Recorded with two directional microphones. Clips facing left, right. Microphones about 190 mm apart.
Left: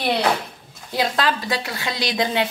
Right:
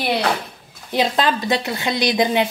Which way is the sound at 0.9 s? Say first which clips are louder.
Right 3 dB; 20° right (ahead or behind).